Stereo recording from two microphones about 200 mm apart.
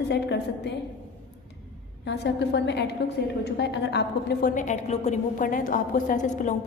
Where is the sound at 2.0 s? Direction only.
60° left (ahead or behind).